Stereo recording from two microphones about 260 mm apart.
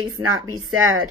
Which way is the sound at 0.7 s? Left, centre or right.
Right.